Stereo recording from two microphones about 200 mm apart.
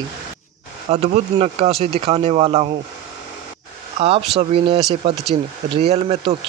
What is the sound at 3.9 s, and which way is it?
Speech, 30° right (ahead or behind).